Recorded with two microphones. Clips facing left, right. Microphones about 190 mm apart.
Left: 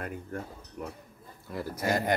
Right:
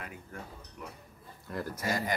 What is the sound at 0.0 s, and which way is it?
Speech, 50° left (ahead or behind).